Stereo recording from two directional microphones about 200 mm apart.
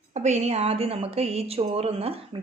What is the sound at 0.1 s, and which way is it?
A woman's voice, 35° right (ahead or behind).